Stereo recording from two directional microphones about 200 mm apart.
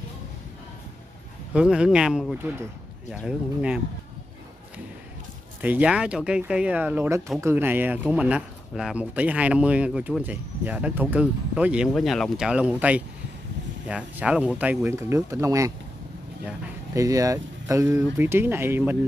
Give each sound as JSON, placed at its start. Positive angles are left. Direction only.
{"t": 1.5, "sound": "speech", "side_deg": -5}
{"t": 5.6, "sound": "speech", "side_deg": -5}